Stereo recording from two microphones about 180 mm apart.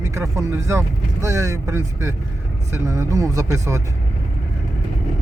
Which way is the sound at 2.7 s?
15° right (ahead or behind).